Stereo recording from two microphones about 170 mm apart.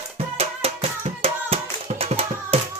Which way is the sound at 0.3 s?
35° right (ahead or behind).